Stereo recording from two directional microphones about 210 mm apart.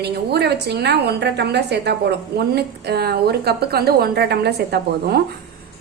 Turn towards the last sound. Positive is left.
turn(degrees=-50)  # may be behind; listen again after turning